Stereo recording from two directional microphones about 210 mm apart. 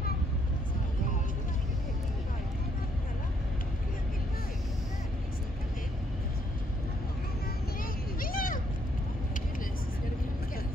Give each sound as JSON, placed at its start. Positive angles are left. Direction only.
{"t": 7.8, "sound": "vehicle", "side_deg": 40}